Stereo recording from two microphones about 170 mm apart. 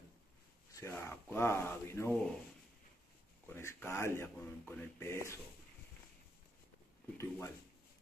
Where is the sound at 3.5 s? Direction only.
15° left (ahead or behind).